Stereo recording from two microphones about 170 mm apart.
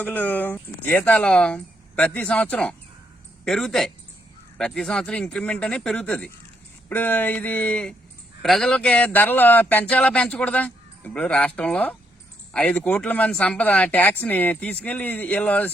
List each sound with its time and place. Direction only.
0.0 s speech: 10° left (ahead or behind)